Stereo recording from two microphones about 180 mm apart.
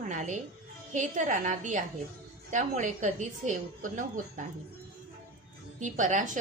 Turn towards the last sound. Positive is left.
turn(degrees=-45)  # may be behind; listen again after turning